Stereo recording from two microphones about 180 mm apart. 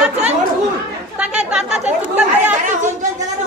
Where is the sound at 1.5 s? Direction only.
5° right (ahead or behind).